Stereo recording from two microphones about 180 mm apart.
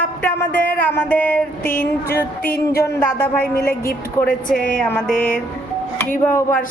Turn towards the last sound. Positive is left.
turn(degrees=10)  # may be behind; listen again after turning